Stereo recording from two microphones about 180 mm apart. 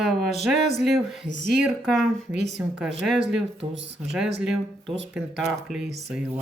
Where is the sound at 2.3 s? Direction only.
70° right (ahead or behind).